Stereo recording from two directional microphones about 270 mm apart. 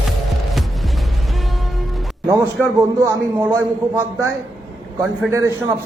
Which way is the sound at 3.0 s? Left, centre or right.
Centre.